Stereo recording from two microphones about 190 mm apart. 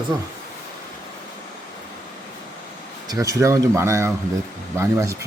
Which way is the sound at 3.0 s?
20° right (ahead or behind).